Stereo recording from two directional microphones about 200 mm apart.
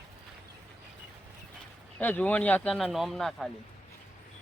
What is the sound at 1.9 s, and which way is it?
Speech, 10° left (ahead or behind).